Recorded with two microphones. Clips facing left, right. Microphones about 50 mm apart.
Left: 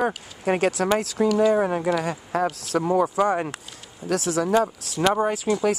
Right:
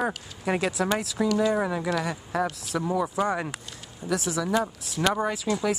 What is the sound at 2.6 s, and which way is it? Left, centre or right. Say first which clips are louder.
Speech: left 6 dB; left.